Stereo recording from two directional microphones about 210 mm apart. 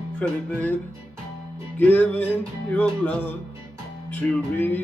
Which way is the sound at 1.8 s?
10° left (ahead or behind).